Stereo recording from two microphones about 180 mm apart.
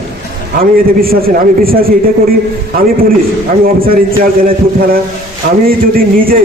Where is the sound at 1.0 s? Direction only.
55° right (ahead or behind).